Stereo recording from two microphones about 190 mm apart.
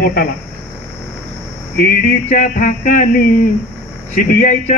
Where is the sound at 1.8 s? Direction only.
50° left (ahead or behind).